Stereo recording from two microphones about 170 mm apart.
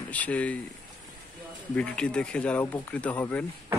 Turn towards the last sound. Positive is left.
turn(degrees=10)  # may be behind; listen again after turning